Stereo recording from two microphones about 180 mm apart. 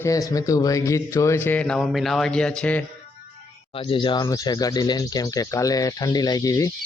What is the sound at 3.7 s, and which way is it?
Speech, 30° left (ahead or behind).